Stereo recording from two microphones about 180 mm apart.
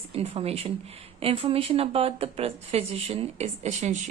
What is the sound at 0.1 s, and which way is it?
A woman's voice, 35° right (ahead or behind).